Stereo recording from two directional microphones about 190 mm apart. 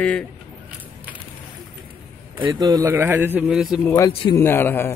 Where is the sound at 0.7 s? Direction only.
10° right (ahead or behind).